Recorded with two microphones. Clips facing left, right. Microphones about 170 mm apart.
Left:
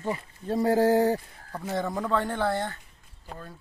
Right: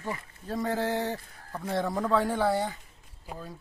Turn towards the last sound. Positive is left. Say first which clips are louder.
# right 1 dB
turn(degrees=-10)  # may be behind; listen again after turning